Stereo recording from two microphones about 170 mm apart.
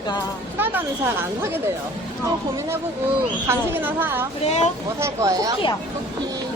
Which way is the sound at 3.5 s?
15° right (ahead or behind).